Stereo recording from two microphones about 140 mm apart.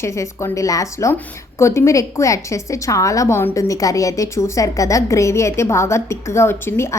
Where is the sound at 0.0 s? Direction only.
20° left (ahead or behind).